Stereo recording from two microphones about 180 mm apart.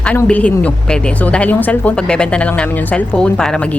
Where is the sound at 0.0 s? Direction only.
5° left (ahead or behind).